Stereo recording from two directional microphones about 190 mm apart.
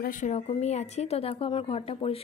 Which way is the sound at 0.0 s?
40° left (ahead or behind).